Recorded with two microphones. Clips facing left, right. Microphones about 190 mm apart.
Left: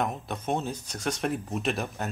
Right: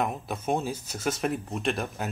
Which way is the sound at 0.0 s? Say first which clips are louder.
Right 1 dB; 5° right (ahead or behind).